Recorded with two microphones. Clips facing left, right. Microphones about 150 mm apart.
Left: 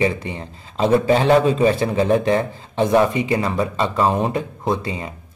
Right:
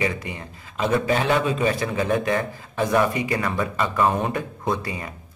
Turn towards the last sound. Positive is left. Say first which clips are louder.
# left 4 dB
turn(degrees=25)  # may be behind; listen again after turning